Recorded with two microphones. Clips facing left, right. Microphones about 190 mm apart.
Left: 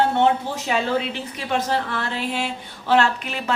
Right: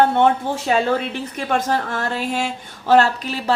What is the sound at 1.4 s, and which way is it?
Speech, 50° right (ahead or behind).